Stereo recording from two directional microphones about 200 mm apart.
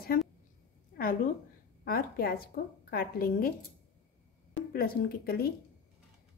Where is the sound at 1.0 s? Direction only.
50° left (ahead or behind).